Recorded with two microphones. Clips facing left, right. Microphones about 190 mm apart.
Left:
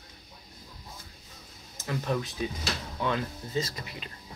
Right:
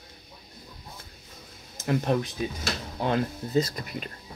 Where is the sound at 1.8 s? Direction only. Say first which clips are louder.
Right 6 dB; 55° right (ahead or behind).